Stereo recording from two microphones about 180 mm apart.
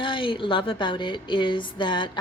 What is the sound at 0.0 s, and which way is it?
Speech, 30° left (ahead or behind).